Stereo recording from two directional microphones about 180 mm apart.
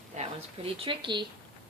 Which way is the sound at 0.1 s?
40° right (ahead or behind).